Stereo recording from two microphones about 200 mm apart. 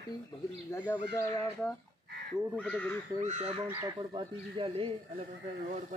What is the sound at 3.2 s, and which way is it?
Speech, 35° right (ahead or behind).